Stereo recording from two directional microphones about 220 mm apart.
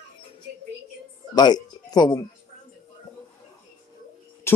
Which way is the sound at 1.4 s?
20° left (ahead or behind).